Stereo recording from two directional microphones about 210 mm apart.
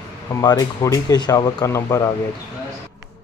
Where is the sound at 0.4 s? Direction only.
15° left (ahead or behind).